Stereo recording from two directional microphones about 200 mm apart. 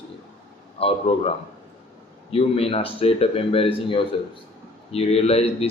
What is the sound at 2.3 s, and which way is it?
A man's voice, 30° left (ahead or behind).